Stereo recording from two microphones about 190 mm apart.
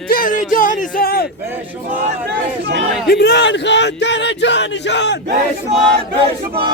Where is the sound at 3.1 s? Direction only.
60° left (ahead or behind).